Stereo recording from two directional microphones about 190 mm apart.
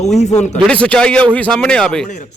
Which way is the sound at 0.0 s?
35° left (ahead or behind).